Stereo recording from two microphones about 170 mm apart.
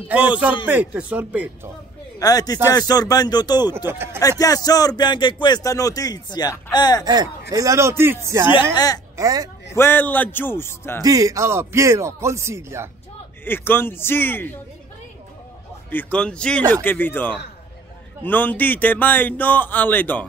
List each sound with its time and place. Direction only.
0.7 s speech: 10° right (ahead or behind)
2.1 s speech: 20° left (ahead or behind)
3.7 s speech: 15° right (ahead or behind)
4.2 s speech: 20° left (ahead or behind)
7.1 s speech: 20° right (ahead or behind)
8.7 s speech: 20° left (ahead or behind)
9.1 s speech: 20° right (ahead or behind)
9.8 s speech: 10° left (ahead or behind)
11.0 s speech: 20° right (ahead or behind)
13.5 s speech: 10° left (ahead or behind)
15.9 s speech: 10° left (ahead or behind)